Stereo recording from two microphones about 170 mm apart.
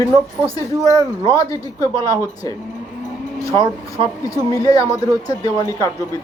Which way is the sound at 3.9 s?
20° left (ahead or behind).